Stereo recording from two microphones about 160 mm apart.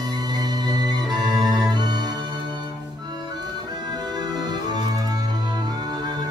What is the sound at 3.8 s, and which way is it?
Music, 25° right (ahead or behind).